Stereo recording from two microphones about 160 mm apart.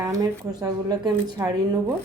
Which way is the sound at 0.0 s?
20° right (ahead or behind).